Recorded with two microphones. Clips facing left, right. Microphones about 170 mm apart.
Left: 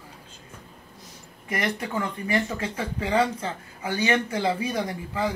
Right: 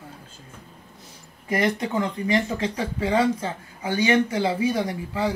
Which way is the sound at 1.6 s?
20° right (ahead or behind).